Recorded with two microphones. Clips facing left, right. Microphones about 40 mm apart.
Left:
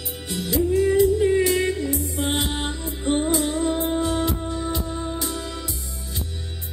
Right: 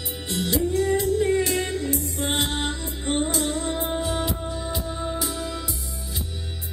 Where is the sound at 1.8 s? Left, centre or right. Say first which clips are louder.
Left 2 dB; right.